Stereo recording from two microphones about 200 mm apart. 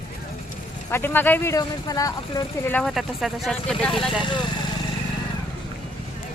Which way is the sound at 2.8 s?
Centre (ahead or behind).